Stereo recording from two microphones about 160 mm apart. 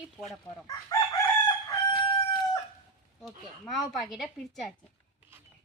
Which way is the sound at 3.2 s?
Centre (ahead or behind).